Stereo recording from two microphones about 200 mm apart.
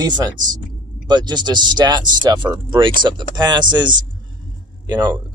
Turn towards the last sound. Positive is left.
turn(degrees=-20)  # may be behind; listen again after turning